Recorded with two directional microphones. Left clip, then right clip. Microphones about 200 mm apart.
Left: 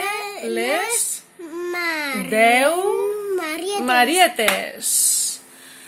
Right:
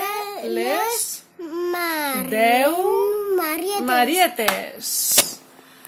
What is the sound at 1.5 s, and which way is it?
Baby cry, 35° right (ahead or behind).